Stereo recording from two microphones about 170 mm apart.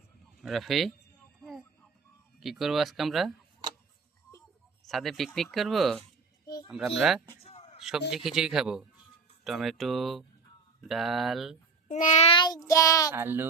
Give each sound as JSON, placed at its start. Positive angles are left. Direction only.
{"t": 0.4, "sound": "speech", "side_deg": 0}
{"t": 1.4, "sound": "a sound", "side_deg": 0}
{"t": 2.4, "sound": "speech", "side_deg": 0}
{"t": 4.9, "sound": "speech", "side_deg": 0}
{"t": 7.4, "sound": "a sound", "side_deg": 40}
{"t": 7.8, "sound": "a man's voice", "side_deg": -5}
{"t": 11.9, "sound": "a child's voice", "side_deg": 45}
{"t": 12.3, "sound": "child singing", "side_deg": 25}
{"t": 13.1, "sound": "speech", "side_deg": -15}